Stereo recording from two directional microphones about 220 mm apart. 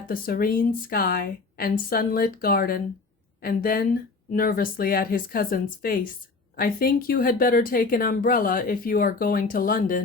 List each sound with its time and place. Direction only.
0.1 s speech: 40° left (ahead or behind)